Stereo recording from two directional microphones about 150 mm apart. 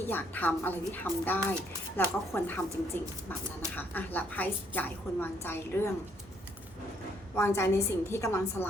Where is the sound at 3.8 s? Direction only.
10° left (ahead or behind).